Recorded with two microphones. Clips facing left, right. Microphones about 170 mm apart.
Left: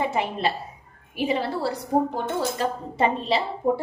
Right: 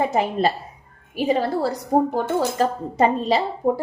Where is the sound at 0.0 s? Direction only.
40° right (ahead or behind).